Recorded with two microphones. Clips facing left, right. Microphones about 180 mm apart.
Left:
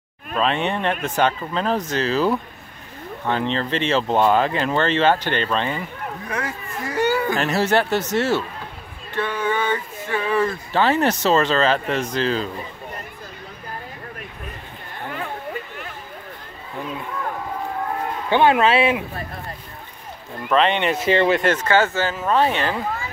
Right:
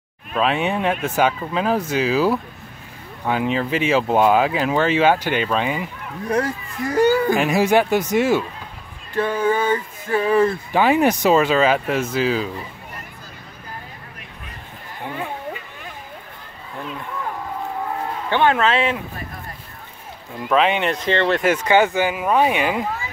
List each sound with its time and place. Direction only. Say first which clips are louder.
0.3 s speech: right 1 dB; 5° right (ahead or behind)
6.2 s speech: right 10 dB; 35° right (ahead or behind)
7.3 s speech: right 3 dB; 10° right (ahead or behind)
9.1 s speech: right 4 dB; 40° right (ahead or behind)
10.7 s speech: even; 10° right (ahead or behind)
15.0 s a sound: right 2 dB; 15° right (ahead or behind)
18.3 s a man's voice: left 2 dB; 15° left (ahead or behind)
20.3 s speech: right 1 dB; 5° right (ahead or behind)
20.9 s a man's voice: left 2 dB; 10° left (ahead or behind)
21.4 s speech: right 2 dB; 10° right (ahead or behind)